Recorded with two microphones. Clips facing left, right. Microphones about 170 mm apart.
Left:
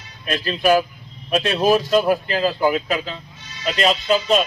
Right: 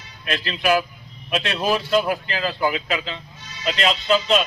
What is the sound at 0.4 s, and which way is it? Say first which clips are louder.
A man's voice: left 4 dB; 45° left (ahead or behind).